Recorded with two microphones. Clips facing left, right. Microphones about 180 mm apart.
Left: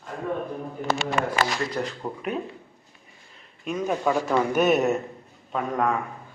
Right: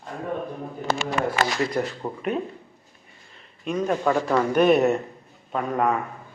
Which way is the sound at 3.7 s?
5° left (ahead or behind).